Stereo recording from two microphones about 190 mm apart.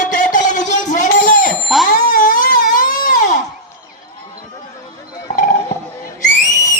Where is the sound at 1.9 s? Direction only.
45° left (ahead or behind).